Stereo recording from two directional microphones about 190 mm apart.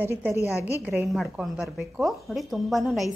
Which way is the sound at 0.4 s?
15° left (ahead or behind).